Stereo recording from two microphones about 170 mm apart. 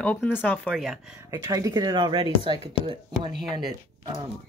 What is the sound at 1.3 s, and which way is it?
Speech, 20° right (ahead or behind).